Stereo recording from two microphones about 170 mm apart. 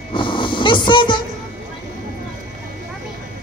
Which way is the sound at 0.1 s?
30° left (ahead or behind).